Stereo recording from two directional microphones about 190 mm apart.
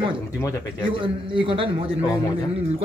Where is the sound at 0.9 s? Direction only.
25° right (ahead or behind).